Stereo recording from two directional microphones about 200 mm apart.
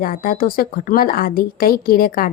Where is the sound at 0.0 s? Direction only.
45° left (ahead or behind).